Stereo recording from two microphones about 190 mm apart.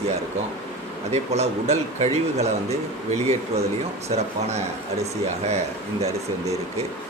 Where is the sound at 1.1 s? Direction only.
35° right (ahead or behind).